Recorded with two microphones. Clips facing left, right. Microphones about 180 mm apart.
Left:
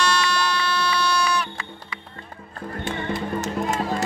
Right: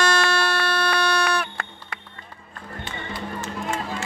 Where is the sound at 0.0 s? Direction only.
55° right (ahead or behind).